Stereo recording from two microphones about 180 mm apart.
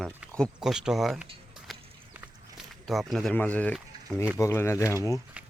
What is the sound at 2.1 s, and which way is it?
Walk, 10° right (ahead or behind).